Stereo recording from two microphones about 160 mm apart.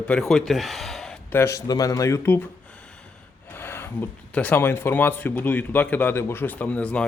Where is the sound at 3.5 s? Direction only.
15° left (ahead or behind).